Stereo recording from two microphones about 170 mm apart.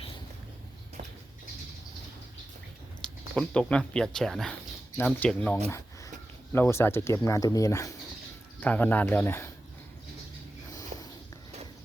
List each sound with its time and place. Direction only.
3.3 s speech: 5° left (ahead or behind)
10.7 s sniff: 20° left (ahead or behind)